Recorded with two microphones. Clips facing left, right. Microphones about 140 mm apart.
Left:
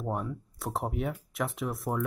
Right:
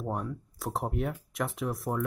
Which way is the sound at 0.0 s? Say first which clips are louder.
Left 1 dB; 5° left (ahead or behind).